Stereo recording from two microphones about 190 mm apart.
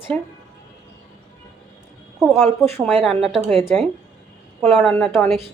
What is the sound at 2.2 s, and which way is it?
Speech, centre (ahead or behind).